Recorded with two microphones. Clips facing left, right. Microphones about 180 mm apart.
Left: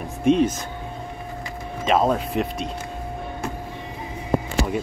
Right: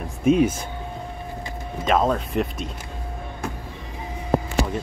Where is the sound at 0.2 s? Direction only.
5° right (ahead or behind).